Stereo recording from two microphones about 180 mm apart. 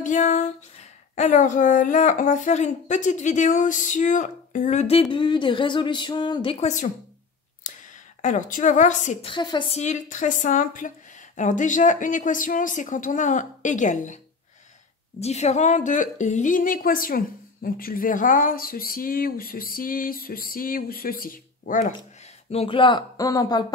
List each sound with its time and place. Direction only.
0.0 s a woman's voice: 45° left (ahead or behind)
7.7 s a sound: 45° left (ahead or behind)
8.2 s a woman's voice: 45° left (ahead or behind)
9.3 s speech: 25° left (ahead or behind)
9.8 s a woman's voice: 40° left (ahead or behind)
22.5 s speech: 30° left (ahead or behind)